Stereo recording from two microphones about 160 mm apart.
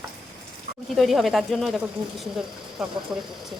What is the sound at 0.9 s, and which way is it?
Speech, centre (ahead or behind).